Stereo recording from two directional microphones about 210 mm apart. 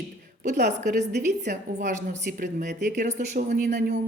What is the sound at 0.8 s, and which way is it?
A woman's voice, 45° right (ahead or behind).